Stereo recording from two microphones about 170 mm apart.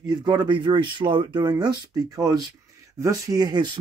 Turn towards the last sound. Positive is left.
turn(degrees=-25)  # may be behind; listen again after turning